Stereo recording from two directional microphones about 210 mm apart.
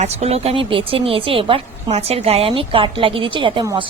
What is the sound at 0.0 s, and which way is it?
A woman's voice, 30° right (ahead or behind).